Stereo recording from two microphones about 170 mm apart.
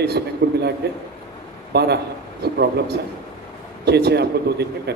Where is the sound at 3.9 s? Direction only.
75° right (ahead or behind).